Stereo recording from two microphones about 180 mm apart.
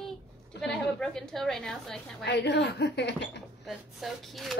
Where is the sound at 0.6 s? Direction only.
5° left (ahead or behind).